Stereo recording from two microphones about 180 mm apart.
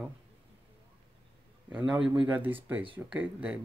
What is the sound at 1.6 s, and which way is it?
Speech, 5° right (ahead or behind).